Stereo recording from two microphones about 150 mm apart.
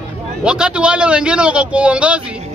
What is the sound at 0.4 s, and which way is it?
Speech, 5° right (ahead or behind).